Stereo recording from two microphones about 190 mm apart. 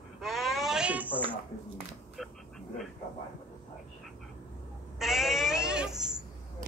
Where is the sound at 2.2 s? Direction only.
Centre (ahead or behind).